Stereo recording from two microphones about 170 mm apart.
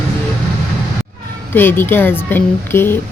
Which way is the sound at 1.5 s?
10° left (ahead or behind).